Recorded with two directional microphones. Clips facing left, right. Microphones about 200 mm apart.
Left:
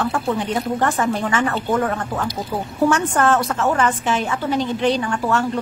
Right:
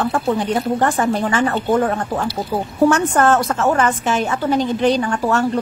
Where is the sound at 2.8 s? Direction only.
45° right (ahead or behind).